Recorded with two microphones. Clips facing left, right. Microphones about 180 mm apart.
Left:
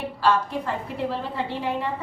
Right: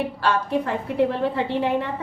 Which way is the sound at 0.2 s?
65° right (ahead or behind).